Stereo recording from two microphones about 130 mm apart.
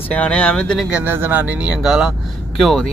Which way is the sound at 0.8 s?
15° right (ahead or behind).